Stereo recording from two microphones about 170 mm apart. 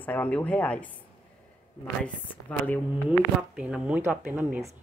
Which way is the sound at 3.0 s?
5° right (ahead or behind).